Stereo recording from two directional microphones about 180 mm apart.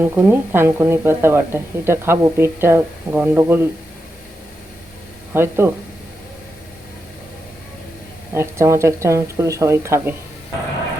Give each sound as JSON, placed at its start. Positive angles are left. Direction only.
{"t": 0.0, "sound": "speech", "side_deg": -10}
{"t": 5.3, "sound": "speech", "side_deg": -15}
{"t": 8.3, "sound": "speech", "side_deg": -15}